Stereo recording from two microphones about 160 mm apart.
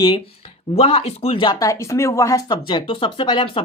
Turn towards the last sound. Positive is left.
turn(degrees=30)  # may be behind; listen again after turning